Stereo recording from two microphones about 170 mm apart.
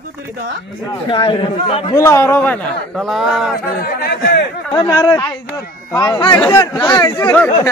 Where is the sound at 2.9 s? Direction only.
Centre (ahead or behind).